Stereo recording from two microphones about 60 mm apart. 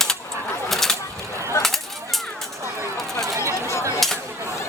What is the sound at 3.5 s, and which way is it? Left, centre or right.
Chatter, left.